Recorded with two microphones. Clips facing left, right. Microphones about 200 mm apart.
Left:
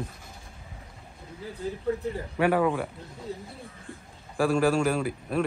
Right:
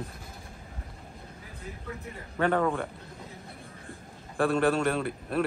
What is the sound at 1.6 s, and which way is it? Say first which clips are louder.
Speech: left 10 dB; 30° left (ahead or behind).